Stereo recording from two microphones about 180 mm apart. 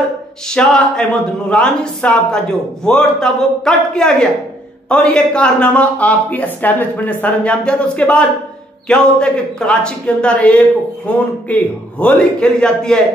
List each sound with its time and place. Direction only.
0.5 s a man's voice: 5° left (ahead or behind)